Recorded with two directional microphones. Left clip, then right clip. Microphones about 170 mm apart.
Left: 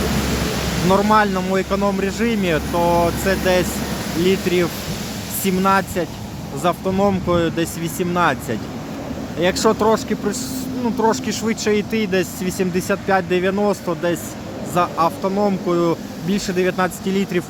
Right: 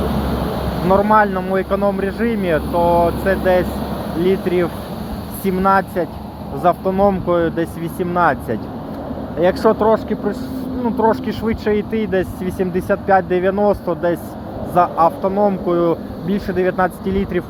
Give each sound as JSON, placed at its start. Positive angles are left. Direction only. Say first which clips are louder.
{"t": 0.2, "sound": "speech", "louder": "even", "side_deg": 20}
{"t": 6.9, "sound": "speech", "louder": "right 3 dB", "side_deg": 25}